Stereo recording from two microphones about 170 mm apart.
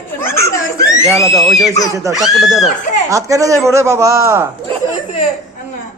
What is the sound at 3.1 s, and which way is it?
Speech, 20° right (ahead or behind).